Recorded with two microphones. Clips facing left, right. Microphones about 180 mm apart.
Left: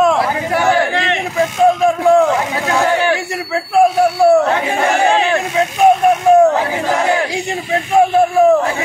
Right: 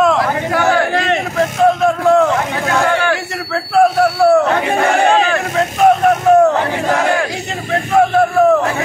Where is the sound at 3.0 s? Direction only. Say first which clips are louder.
Left 1 dB; 20° left (ahead or behind).